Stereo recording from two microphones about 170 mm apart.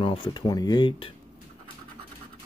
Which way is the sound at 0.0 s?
30° left (ahead or behind).